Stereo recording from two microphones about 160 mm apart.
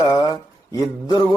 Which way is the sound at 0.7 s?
25° left (ahead or behind).